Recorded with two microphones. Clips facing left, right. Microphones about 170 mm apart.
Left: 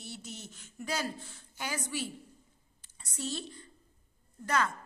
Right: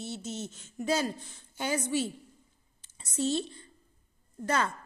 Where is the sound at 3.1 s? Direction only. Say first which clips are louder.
Right 9 dB; 25° right (ahead or behind).